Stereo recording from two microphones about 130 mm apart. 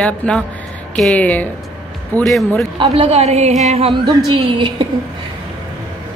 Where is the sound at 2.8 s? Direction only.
50° right (ahead or behind).